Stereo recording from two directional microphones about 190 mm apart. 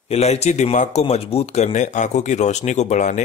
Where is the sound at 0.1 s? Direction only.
35° left (ahead or behind).